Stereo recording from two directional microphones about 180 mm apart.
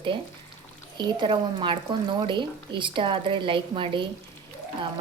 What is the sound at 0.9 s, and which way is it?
Stir, 25° right (ahead or behind).